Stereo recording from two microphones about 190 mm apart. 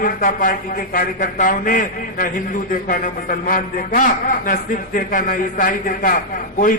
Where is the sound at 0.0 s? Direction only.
45° left (ahead or behind).